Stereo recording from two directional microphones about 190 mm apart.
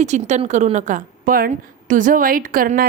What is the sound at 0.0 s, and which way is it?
A woman's voice, 40° right (ahead or behind).